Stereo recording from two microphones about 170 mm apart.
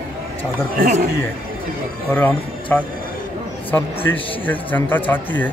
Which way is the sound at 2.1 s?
10° left (ahead or behind).